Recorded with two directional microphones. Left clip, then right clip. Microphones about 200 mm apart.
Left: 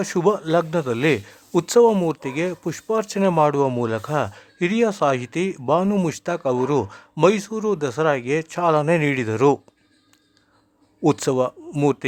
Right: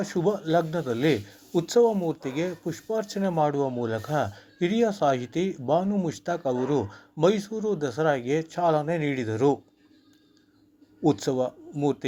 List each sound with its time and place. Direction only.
0.0 s speech: 30° left (ahead or behind)
11.0 s speech: 30° left (ahead or behind)